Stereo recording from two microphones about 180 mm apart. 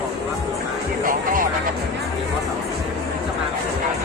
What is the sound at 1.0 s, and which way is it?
Music, 50° right (ahead or behind).